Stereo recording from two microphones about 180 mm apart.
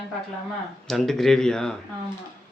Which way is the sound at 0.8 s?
Centre (ahead or behind).